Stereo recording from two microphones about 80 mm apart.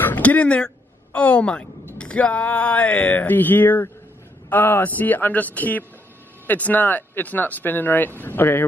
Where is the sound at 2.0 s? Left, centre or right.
Centre.